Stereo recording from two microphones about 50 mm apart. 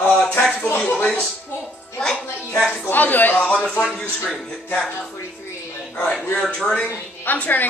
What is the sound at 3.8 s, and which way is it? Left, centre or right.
Speech, centre.